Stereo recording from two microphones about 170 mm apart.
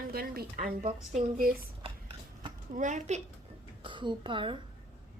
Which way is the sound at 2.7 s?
45° right (ahead or behind).